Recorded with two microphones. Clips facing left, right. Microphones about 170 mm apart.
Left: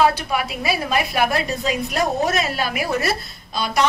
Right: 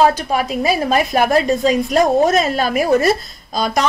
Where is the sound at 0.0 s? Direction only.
40° right (ahead or behind).